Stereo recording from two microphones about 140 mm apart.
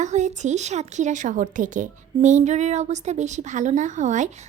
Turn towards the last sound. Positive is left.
turn(degrees=-60)  # may be behind; listen again after turning